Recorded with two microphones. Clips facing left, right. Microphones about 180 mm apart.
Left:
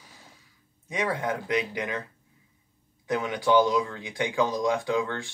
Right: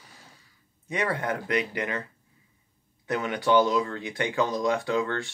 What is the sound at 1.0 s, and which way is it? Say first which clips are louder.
Speech: even; 10° left (ahead or behind).